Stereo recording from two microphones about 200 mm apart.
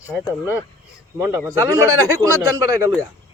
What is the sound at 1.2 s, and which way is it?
Speech, 15° right (ahead or behind).